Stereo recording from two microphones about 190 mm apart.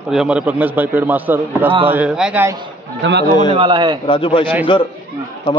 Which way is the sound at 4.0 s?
25° left (ahead or behind).